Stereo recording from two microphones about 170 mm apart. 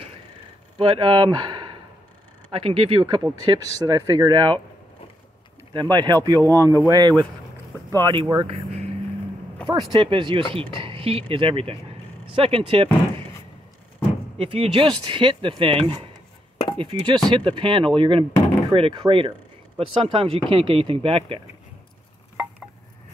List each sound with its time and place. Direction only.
0.7 s speech: 30° right (ahead or behind)
5.7 s speech: 25° right (ahead or behind)
14.4 s speech: 35° right (ahead or behind)